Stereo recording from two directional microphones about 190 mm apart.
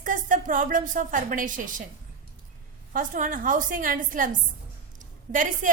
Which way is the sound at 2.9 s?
45° right (ahead or behind).